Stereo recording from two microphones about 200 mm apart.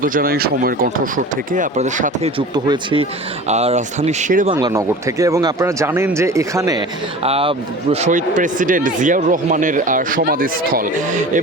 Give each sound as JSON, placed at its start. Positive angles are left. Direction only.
{"t": 0.0, "sound": "speech", "side_deg": -45}
{"t": 5.2, "sound": "speech", "side_deg": -15}
{"t": 7.3, "sound": "speech", "side_deg": -30}
{"t": 8.0, "sound": "speech", "side_deg": -40}